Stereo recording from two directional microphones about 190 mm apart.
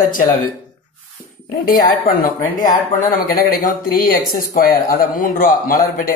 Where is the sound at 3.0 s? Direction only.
50° left (ahead or behind).